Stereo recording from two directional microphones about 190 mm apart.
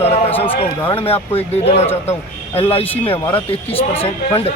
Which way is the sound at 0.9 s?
30° left (ahead or behind).